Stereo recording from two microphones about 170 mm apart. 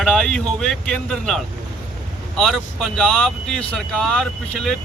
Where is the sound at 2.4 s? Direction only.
Centre (ahead or behind).